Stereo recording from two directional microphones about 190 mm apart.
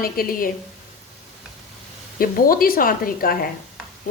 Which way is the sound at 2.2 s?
50° left (ahead or behind).